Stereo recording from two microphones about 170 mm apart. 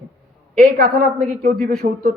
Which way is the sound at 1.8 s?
45° right (ahead or behind).